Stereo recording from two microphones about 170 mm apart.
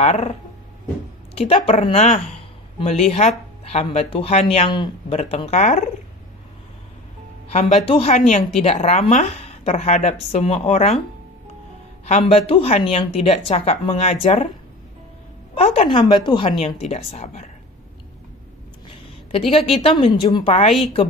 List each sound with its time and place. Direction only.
0.0 s speech: 35° left (ahead or behind)
1.3 s speech: 35° left (ahead or behind)
7.4 s speech: 35° left (ahead or behind)
12.1 s speech: 35° left (ahead or behind)
15.5 s a woman's voice: 35° left (ahead or behind)
16.9 s speech: 40° left (ahead or behind)
19.5 s speech: 35° left (ahead or behind)